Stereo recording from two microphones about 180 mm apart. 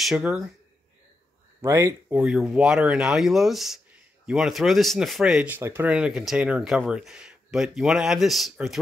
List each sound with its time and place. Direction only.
0.0 s speech: 5° right (ahead or behind)
1.6 s speech: 15° right (ahead or behind)
2.1 s speech: 5° right (ahead or behind)